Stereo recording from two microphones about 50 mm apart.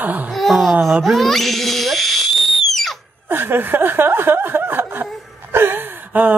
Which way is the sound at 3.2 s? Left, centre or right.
Right.